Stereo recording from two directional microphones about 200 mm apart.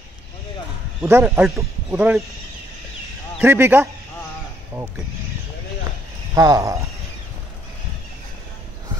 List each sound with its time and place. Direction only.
1.0 s speech: 10° right (ahead or behind)
3.3 s speech: 10° right (ahead or behind)
6.3 s speech: 15° right (ahead or behind)